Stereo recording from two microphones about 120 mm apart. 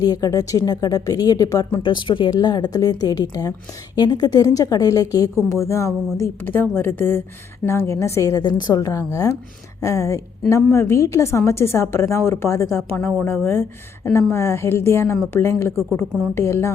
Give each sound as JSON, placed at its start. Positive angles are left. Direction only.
{"t": 0.0, "sound": "a woman's voice", "side_deg": 30}